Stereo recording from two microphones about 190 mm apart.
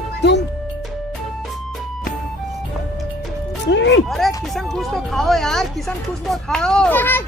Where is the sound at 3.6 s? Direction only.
70° left (ahead or behind).